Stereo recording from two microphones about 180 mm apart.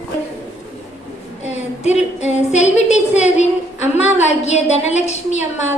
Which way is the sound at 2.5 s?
40° left (ahead or behind).